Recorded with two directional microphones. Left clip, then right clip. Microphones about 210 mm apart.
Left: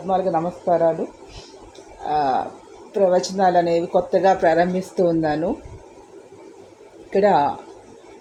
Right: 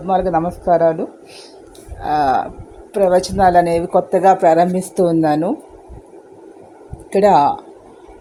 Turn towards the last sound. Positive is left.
turn(degrees=-45)  # may be behind; listen again after turning